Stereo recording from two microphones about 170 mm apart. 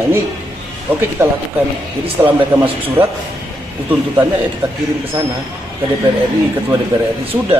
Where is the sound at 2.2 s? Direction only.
10° right (ahead or behind).